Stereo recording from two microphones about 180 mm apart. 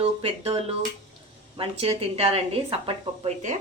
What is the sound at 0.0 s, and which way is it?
Speech, 35° right (ahead or behind).